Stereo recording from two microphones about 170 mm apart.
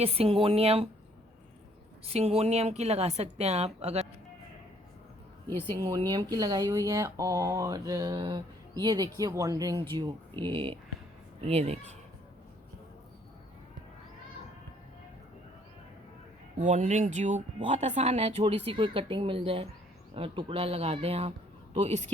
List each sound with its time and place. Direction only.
0.0 s speech: 35° right (ahead or behind)
2.0 s speech: 35° right (ahead or behind)
5.7 s speech: 25° right (ahead or behind)
16.6 s speech: 45° right (ahead or behind)